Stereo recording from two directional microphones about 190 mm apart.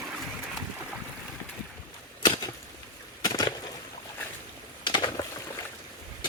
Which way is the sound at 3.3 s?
25° left (ahead or behind).